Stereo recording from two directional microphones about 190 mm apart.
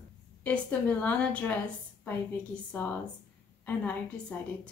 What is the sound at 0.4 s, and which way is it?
A woman's voice, 10° left (ahead or behind).